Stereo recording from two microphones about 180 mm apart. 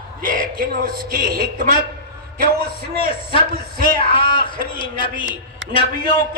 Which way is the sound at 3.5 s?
55° right (ahead or behind).